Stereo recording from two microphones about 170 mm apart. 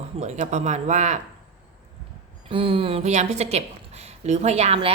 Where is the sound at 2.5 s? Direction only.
35° right (ahead or behind).